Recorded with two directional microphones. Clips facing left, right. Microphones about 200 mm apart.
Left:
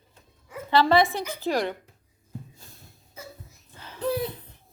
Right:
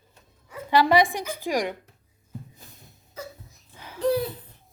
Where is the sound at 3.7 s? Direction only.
10° right (ahead or behind).